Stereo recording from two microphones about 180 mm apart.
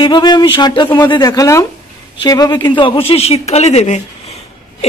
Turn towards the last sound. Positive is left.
turn(degrees=40)  # may be behind; listen again after turning